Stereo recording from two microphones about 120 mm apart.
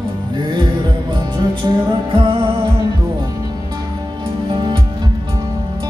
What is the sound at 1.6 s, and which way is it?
Music, 35° right (ahead or behind).